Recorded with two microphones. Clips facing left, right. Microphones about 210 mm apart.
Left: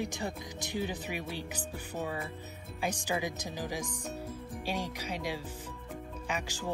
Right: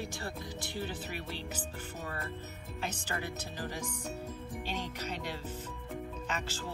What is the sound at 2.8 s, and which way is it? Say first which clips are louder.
Speech: left 5 dB; 10° left (ahead or behind).